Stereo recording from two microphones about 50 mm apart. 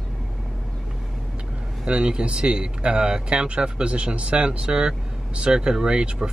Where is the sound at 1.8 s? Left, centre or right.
Centre.